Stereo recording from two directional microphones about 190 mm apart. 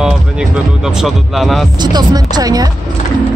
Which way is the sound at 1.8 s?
20° right (ahead or behind).